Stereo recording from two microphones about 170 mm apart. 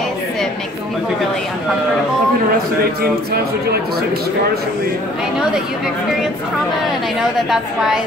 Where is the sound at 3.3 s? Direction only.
65° right (ahead or behind).